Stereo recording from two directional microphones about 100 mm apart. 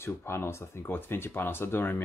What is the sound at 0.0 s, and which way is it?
Speech, 25° left (ahead or behind).